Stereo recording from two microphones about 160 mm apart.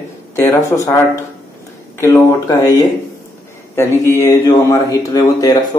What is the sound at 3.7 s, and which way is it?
Speech, 20° left (ahead or behind).